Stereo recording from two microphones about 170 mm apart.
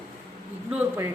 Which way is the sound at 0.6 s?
10° right (ahead or behind).